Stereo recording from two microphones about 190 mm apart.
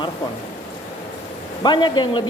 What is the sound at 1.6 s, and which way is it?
Speech, 25° left (ahead or behind).